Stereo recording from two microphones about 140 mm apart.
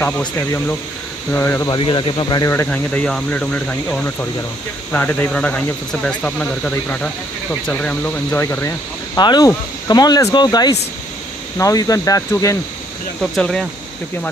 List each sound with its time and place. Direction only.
0.4 s speech: 15° left (ahead or behind)
1.8 s speech: 35° left (ahead or behind)
2.5 s speech: 15° left (ahead or behind)
9.2 s speech: 30° left (ahead or behind)
13.2 s speech: 5° left (ahead or behind)